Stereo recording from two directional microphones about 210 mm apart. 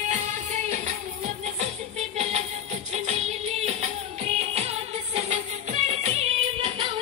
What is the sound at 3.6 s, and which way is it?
Music, 30° right (ahead or behind).